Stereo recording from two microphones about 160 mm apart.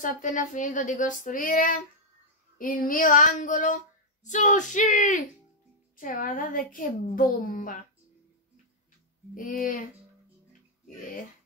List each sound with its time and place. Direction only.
0.0 s a woman's voice: 55° left (ahead or behind)
2.6 s female singing: 60° left (ahead or behind)
5.9 s a woman's voice: 55° left (ahead or behind)
9.3 s a woman's voice: 60° left (ahead or behind)